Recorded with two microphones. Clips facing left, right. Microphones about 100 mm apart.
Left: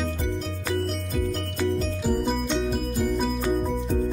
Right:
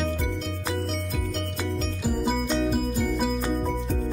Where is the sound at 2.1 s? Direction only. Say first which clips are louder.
Even; centre (ahead or behind).